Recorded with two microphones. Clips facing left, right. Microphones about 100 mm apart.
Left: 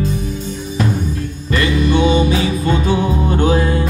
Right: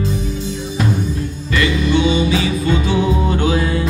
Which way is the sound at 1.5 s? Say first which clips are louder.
Left 1 dB; 45° left (ahead or behind).